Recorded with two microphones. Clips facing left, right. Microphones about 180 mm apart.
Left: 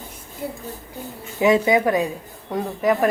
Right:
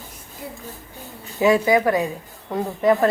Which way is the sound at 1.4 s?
20° left (ahead or behind).